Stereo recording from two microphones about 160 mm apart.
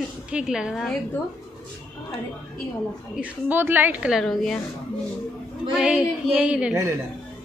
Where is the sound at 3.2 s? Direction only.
10° right (ahead or behind).